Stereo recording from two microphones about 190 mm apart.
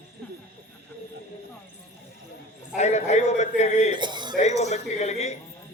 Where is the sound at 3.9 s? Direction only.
25° right (ahead or behind).